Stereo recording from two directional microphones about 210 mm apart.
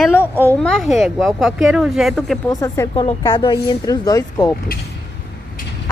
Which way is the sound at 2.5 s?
15° left (ahead or behind).